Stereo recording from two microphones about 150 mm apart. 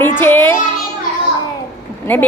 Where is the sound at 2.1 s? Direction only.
10° left (ahead or behind).